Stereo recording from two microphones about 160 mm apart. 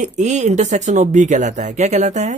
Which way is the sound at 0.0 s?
45° right (ahead or behind).